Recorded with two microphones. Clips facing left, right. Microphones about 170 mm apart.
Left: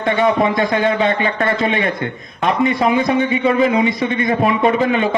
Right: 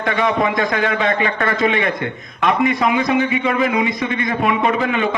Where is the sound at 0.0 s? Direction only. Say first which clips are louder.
Left 3 dB; 30° left (ahead or behind).